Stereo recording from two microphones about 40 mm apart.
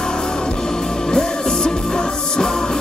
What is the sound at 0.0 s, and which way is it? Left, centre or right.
Music, centre.